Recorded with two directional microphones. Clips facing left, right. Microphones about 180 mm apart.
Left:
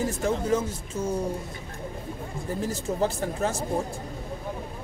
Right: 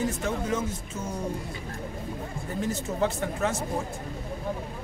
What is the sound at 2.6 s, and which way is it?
Speech, 30° left (ahead or behind).